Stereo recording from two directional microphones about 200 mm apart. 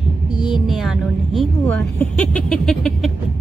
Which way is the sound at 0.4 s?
Centre (ahead or behind).